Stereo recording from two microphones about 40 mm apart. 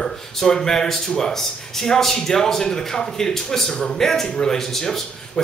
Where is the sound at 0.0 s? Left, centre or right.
Centre.